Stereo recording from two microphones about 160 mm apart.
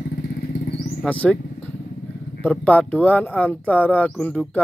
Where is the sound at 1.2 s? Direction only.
10° left (ahead or behind).